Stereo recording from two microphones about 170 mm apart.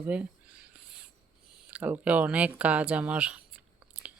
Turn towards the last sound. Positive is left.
turn(degrees=-10)  # may be behind; listen again after turning